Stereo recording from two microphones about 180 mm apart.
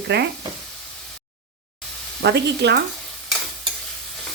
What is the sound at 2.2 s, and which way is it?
Speech, 70° right (ahead or behind).